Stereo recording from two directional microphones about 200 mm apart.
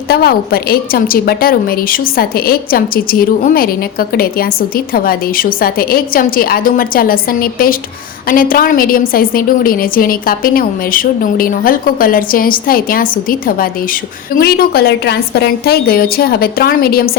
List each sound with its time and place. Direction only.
0.1 s a woman's voice: 50° left (ahead or behind)